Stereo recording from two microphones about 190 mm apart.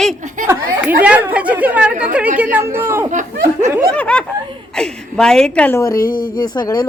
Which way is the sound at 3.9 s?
5° left (ahead or behind).